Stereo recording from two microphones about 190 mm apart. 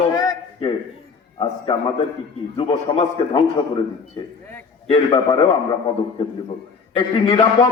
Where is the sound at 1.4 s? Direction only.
30° left (ahead or behind).